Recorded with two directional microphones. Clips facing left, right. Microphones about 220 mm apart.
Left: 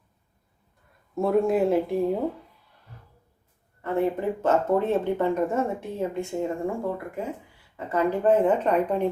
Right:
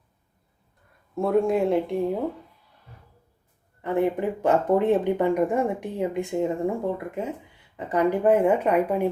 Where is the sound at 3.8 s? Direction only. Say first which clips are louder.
Right 1 dB; 15° right (ahead or behind).